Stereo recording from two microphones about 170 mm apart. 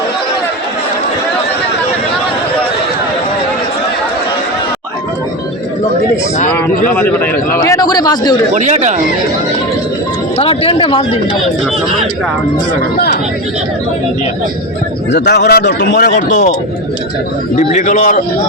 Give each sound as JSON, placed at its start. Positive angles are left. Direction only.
{"t": 6.9, "sound": "a man's voice", "side_deg": 10}
{"t": 8.5, "sound": "speech", "side_deg": -45}
{"t": 10.3, "sound": "speech", "side_deg": 35}
{"t": 15.1, "sound": "a man's voice", "side_deg": 80}
{"t": 17.5, "sound": "a man's voice", "side_deg": 45}